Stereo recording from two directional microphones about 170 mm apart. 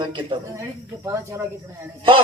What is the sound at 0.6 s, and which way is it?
Speech, 15° right (ahead or behind).